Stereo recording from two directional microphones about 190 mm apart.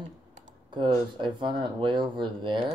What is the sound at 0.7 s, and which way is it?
Speech, 25° right (ahead or behind).